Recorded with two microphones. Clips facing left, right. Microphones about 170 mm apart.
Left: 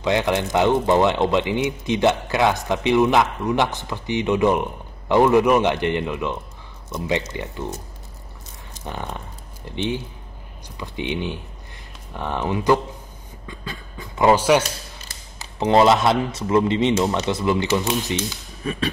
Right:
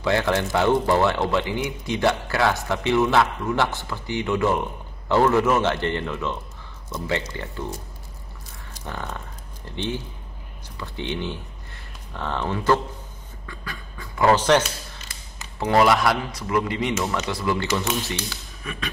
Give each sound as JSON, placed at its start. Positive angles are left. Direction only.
{"t": 0.0, "sound": "speech", "side_deg": 20}
{"t": 8.7, "sound": "speech", "side_deg": 20}
{"t": 13.5, "sound": "beatboxing", "side_deg": 20}
{"t": 14.3, "sound": "speech", "side_deg": 10}
{"t": 15.6, "sound": "speech", "side_deg": 25}
{"t": 18.6, "sound": "speech", "side_deg": 30}